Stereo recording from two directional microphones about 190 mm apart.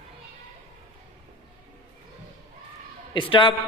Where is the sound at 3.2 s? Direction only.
25° left (ahead or behind).